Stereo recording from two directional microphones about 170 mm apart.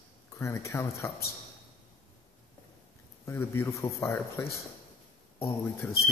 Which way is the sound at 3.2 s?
15° left (ahead or behind).